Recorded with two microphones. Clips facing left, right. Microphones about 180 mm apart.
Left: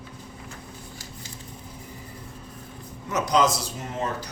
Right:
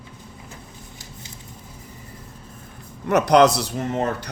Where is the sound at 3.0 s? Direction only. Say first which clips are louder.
Right 7 dB; 65° right (ahead or behind).